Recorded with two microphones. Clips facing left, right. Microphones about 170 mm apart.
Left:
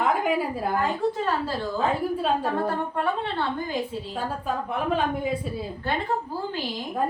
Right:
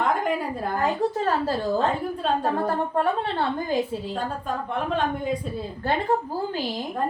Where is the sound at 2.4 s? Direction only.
40° right (ahead or behind).